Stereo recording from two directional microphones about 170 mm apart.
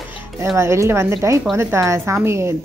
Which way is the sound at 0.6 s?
15° right (ahead or behind).